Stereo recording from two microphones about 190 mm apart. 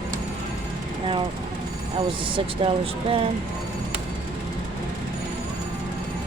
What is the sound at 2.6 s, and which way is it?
Speech, 30° right (ahead or behind).